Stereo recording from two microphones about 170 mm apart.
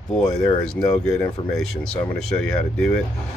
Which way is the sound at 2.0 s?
5° left (ahead or behind).